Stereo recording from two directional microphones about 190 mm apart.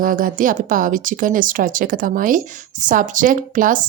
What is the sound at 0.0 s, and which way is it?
Speech, 45° right (ahead or behind).